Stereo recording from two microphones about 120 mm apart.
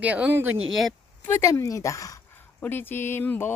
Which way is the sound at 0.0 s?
10° right (ahead or behind).